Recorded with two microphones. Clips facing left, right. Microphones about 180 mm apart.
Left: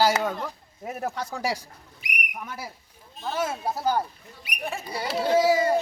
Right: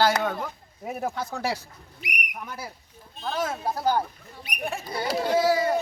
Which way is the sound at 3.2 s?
10° left (ahead or behind).